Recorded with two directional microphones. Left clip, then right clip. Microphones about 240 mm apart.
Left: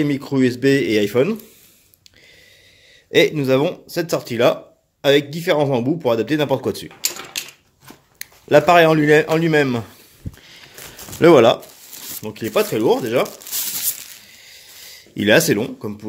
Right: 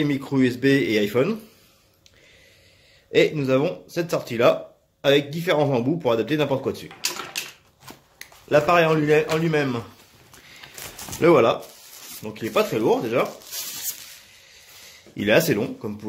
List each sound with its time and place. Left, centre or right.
0.0 s speech: centre
3.1 s speech: left
7.3 s typewriter: centre
8.2 s speech: left
11.1 s speech: left
15.1 s speech: left